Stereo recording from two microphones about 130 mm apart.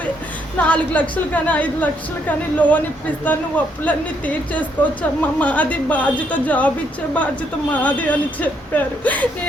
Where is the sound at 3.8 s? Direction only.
10° left (ahead or behind).